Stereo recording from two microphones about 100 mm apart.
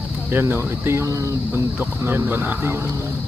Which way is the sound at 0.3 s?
20° right (ahead or behind).